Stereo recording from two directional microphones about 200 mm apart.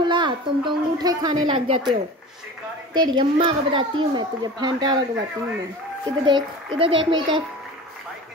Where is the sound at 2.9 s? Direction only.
20° right (ahead or behind).